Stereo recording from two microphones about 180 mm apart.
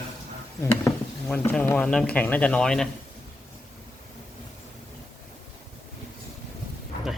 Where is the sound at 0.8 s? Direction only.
10° left (ahead or behind).